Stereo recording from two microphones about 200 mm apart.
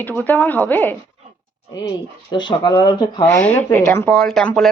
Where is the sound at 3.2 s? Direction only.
10° left (ahead or behind).